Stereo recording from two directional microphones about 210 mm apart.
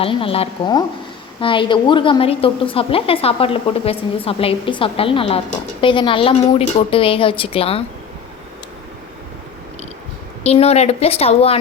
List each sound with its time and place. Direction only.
0.0 s a woman's voice: 25° left (ahead or behind)
10.4 s a woman's voice: 30° left (ahead or behind)